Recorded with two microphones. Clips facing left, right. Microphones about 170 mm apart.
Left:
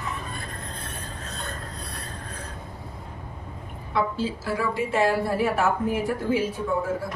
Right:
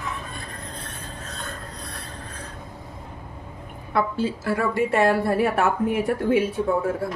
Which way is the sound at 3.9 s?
55° right (ahead or behind).